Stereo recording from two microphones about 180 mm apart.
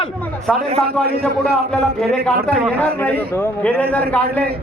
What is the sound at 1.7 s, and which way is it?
A man's voice, 5° left (ahead or behind).